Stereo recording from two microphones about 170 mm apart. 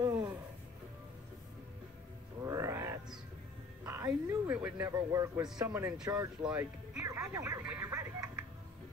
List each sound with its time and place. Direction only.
0.0 s music: 20° right (ahead or behind)
2.4 s a sound: 20° right (ahead or behind)
5.7 s speech: 10° right (ahead or behind)
6.9 s music: 15° right (ahead or behind)